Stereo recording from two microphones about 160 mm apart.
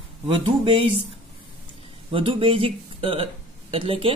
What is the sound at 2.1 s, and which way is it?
Speech, 35° right (ahead or behind).